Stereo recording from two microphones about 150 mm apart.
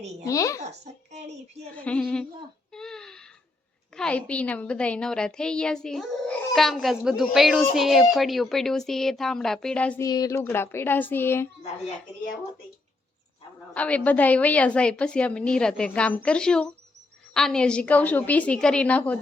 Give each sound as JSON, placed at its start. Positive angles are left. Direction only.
{"t": 0.3, "sound": "speech", "side_deg": 20}
{"t": 0.6, "sound": "a child's voice", "side_deg": -50}
{"t": 1.7, "sound": "a woman's voice", "side_deg": 10}
{"t": 2.7, "sound": "a sound", "side_deg": 5}
{"t": 3.9, "sound": "a woman's voice", "side_deg": 5}
{"t": 10.0, "sound": "a woman's voice", "side_deg": 25}
{"t": 13.7, "sound": "a woman's voice", "side_deg": 10}